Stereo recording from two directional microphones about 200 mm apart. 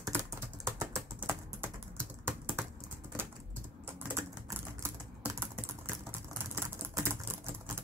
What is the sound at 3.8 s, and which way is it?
Typing, 15° right (ahead or behind).